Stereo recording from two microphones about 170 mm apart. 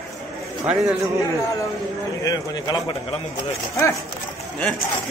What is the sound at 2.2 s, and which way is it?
A man's voice, 25° left (ahead or behind).